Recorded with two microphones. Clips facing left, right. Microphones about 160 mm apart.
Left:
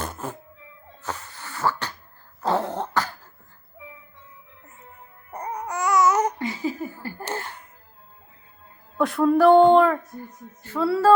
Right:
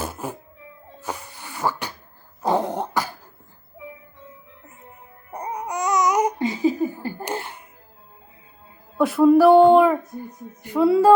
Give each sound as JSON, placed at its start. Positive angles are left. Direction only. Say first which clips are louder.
{"t": 0.0, "sound": "music", "louder": "right 2 dB", "side_deg": -10}
{"t": 1.0, "sound": "a sound", "louder": "right 1 dB", "side_deg": -10}
{"t": 2.4, "sound": "throat clearing", "louder": "right 2 dB", "side_deg": -15}
{"t": 5.3, "sound": "babbling", "louder": "right 2 dB", "side_deg": -10}
{"t": 9.0, "sound": "speech", "louder": "right 4 dB", "side_deg": -5}
{"t": 10.6, "sound": "music", "louder": "right 5 dB", "side_deg": -15}